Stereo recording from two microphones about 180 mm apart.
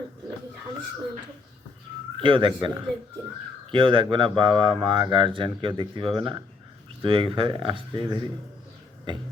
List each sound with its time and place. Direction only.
2.1 s speech: 25° right (ahead or behind)